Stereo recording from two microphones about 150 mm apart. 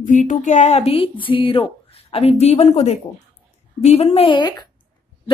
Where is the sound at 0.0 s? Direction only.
60° left (ahead or behind); by 4.4 s 45° left (ahead or behind).